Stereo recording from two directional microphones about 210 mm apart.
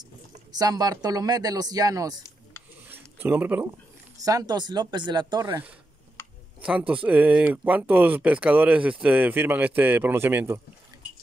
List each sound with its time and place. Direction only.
0.0 s speech: 20° right (ahead or behind)
2.9 s a sound: 10° right (ahead or behind)
4.2 s speech: 15° right (ahead or behind)